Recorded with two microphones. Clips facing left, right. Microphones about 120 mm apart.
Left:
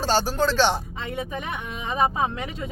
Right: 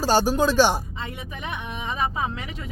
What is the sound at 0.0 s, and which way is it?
Speech, 15° right (ahead or behind).